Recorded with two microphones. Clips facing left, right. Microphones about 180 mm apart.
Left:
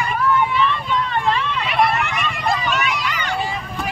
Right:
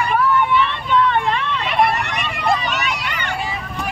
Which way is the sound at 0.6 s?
65° right (ahead or behind).